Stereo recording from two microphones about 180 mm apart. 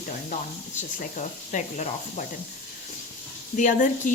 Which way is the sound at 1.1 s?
40° left (ahead or behind).